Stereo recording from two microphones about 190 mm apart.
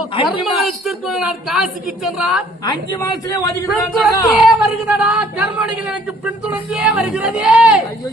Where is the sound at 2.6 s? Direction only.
20° left (ahead or behind).